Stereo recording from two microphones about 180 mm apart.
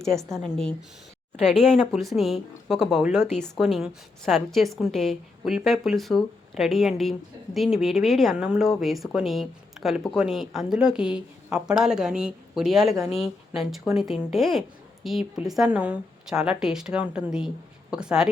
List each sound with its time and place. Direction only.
0.0 s a woman's voice: centre (ahead or behind)
1.4 s speech: 40° left (ahead or behind)
1.7 s a woman's voice: centre (ahead or behind)